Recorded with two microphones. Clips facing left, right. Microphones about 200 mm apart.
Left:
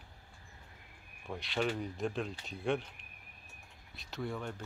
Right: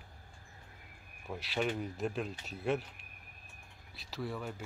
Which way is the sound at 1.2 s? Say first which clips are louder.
Even; 5° right (ahead or behind).